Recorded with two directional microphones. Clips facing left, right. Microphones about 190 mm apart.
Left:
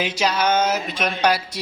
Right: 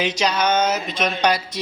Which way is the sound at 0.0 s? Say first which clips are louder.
Right 1 dB; 5° left (ahead or behind).